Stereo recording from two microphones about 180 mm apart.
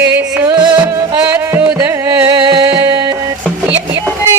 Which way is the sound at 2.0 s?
20° right (ahead or behind).